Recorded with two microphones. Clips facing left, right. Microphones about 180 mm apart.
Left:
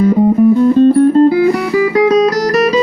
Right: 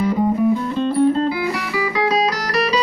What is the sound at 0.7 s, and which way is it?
Music, 50° left (ahead or behind).